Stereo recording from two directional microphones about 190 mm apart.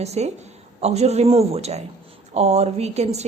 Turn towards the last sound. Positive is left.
turn(degrees=-35)  # may be behind; listen again after turning